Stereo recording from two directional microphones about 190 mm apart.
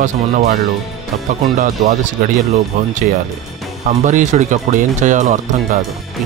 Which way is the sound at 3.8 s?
40° right (ahead or behind).